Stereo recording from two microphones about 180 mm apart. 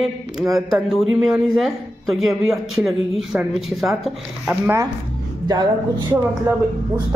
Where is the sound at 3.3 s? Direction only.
5° right (ahead or behind).